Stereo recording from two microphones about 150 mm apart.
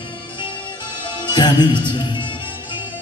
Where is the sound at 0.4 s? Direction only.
30° left (ahead or behind).